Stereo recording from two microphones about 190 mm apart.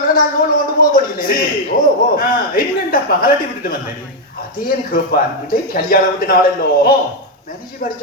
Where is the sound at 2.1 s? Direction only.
50° left (ahead or behind).